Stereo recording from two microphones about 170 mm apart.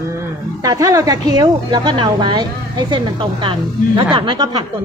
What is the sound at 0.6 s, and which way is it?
A woman's voice, 20° right (ahead or behind).